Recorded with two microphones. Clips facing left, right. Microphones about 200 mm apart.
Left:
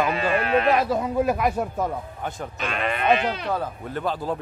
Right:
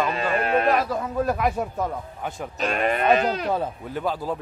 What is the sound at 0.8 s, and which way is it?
Speech, 15° left (ahead or behind).